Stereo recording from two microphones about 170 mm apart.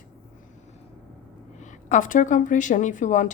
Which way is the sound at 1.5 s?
45° left (ahead or behind).